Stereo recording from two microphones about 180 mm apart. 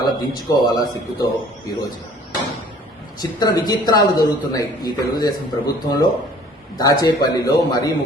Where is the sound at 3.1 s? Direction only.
20° left (ahead or behind).